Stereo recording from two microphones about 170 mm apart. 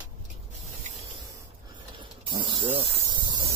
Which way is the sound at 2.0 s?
25° right (ahead or behind).